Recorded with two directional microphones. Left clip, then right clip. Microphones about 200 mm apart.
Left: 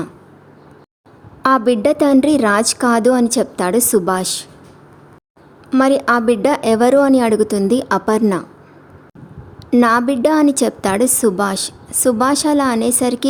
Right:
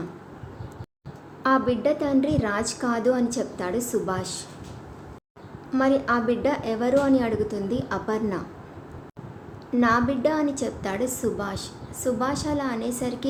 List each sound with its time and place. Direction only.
1.4 s a woman's voice: 55° left (ahead or behind)
5.7 s a woman's voice: 55° left (ahead or behind)
9.7 s a woman's voice: 60° left (ahead or behind)